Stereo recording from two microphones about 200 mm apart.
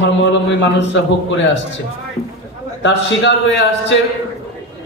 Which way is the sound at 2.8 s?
60° left (ahead or behind).